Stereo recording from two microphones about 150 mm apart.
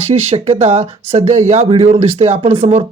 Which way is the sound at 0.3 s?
40° right (ahead or behind).